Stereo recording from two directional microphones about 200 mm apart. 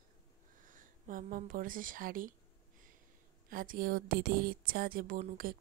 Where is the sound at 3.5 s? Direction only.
45° right (ahead or behind).